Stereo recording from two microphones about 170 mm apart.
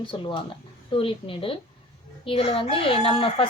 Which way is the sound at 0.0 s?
30° left (ahead or behind).